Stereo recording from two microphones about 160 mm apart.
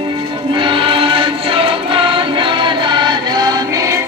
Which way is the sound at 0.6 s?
30° right (ahead or behind).